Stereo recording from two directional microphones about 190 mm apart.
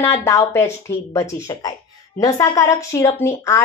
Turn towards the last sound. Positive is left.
turn(degrees=15)  # may be behind; listen again after turning